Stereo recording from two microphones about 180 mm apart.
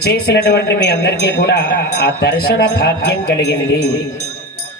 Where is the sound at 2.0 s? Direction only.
60° left (ahead or behind).